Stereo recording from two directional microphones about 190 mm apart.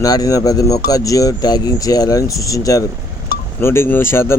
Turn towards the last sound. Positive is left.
turn(degrees=10)  # may be behind; listen again after turning